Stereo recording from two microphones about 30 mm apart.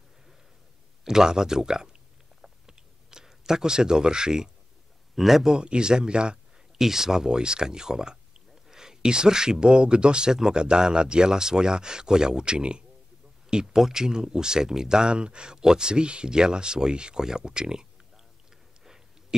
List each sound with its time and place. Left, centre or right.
1.0 s speech: right
2.4 s clicking: right
5.1 s a man's voice: centre
5.5 s speech: right
6.8 s speech: centre; by 12.8 s right
13.7 s speech: centre
15.0 s speech: right